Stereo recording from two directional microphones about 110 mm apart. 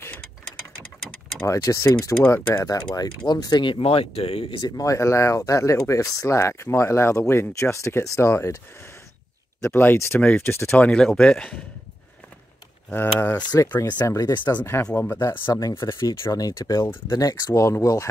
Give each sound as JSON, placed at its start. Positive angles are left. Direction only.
{"t": 1.5, "sound": "speech", "side_deg": 25}
{"t": 2.2, "sound": "speech", "side_deg": 20}
{"t": 2.8, "sound": "speech", "side_deg": 40}
{"t": 4.6, "sound": "speech", "side_deg": 40}
{"t": 9.6, "sound": "speech", "side_deg": 20}
{"t": 10.9, "sound": "speech", "side_deg": 5}
{"t": 12.9, "sound": "speech", "side_deg": 20}
{"t": 13.4, "sound": "speech", "side_deg": 40}
{"t": 15.0, "sound": "speech", "side_deg": 20}
{"t": 16.8, "sound": "speech", "side_deg": 20}
{"t": 17.2, "sound": "speech", "side_deg": 30}